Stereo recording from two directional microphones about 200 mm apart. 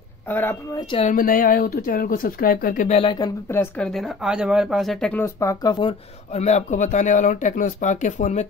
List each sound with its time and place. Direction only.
0.3 s speech: 10° left (ahead or behind)
0.7 s speech: 25° left (ahead or behind)
1.0 s a woman's voice: 45° left (ahead or behind)
2.9 s speech: 25° left (ahead or behind)
3.4 s speech: 10° left (ahead or behind); by 8.5 s 35° left (ahead or behind)